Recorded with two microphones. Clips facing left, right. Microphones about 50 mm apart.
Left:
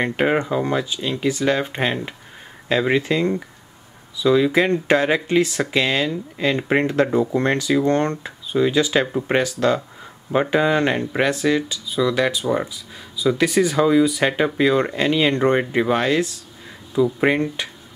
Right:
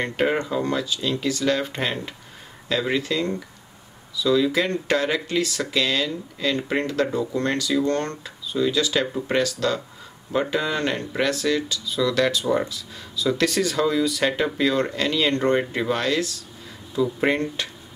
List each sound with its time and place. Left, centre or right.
0.0 s speech: centre